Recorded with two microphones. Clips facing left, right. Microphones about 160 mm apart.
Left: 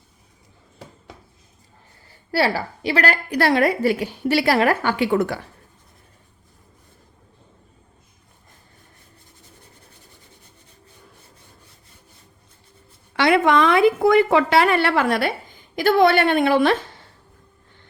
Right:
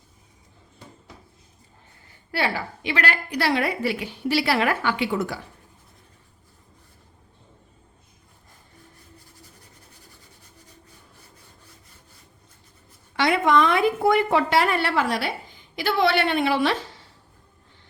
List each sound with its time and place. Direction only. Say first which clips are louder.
2.3 s a woman's voice: left 5 dB; 35° left (ahead or behind); by 5.4 s 60° left (ahead or behind)
13.1 s a woman's voice: left 3 dB; 75° left (ahead or behind); by 17.0 s 50° left (ahead or behind)